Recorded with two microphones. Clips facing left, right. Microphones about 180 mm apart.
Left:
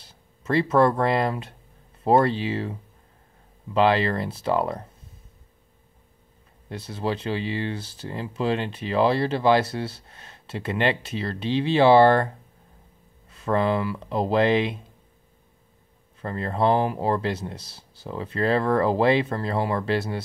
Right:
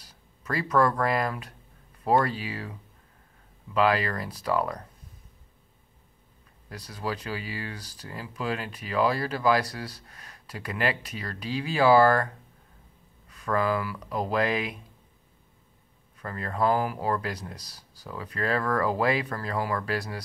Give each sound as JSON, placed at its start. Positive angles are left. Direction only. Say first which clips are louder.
{"t": 0.0, "sound": "speech", "louder": "left 6 dB", "side_deg": 25}
{"t": 6.7, "sound": "speech", "louder": "left 5 dB", "side_deg": 25}
{"t": 13.3, "sound": "speech", "louder": "left 4 dB", "side_deg": 25}
{"t": 16.2, "sound": "speech", "louder": "left 4 dB", "side_deg": 30}